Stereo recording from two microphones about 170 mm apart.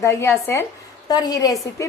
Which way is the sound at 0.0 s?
15° left (ahead or behind).